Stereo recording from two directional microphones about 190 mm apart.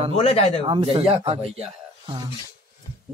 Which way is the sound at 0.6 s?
25° right (ahead or behind).